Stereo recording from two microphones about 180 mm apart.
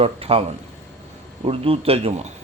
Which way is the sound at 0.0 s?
35° right (ahead or behind).